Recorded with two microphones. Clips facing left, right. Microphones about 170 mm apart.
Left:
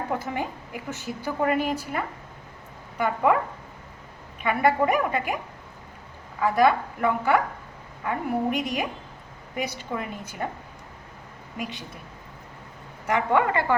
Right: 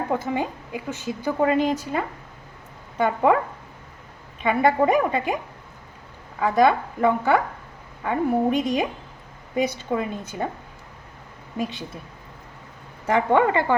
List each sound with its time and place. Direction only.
0.1 s a woman's voice: 20° right (ahead or behind)
4.4 s a woman's voice: 20° right (ahead or behind)
6.4 s a woman's voice: 25° right (ahead or behind)
13.1 s a woman's voice: 25° right (ahead or behind)